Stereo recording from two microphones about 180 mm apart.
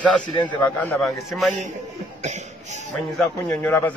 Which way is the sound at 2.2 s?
40° right (ahead or behind).